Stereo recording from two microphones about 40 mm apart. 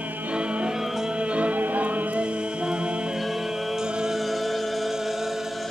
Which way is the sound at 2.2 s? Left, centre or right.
Right.